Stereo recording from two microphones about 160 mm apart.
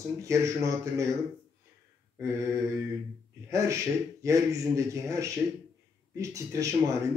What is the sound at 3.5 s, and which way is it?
A man's voice, 20° right (ahead or behind).